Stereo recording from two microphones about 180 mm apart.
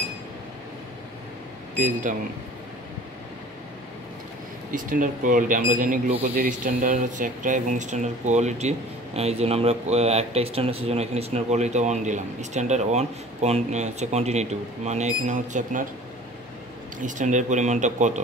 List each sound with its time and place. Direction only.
1.8 s speech: 45° right (ahead or behind)
4.6 s speech: 45° right (ahead or behind)
17.0 s speech: 45° right (ahead or behind)